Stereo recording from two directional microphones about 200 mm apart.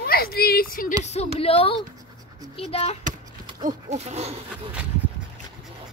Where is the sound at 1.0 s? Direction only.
35° left (ahead or behind).